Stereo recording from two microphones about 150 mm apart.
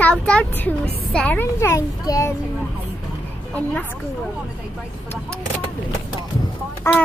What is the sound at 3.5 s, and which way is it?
Speech, 10° left (ahead or behind).